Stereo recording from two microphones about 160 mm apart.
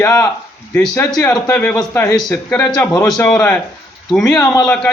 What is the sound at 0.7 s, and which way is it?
Speech, 5° left (ahead or behind).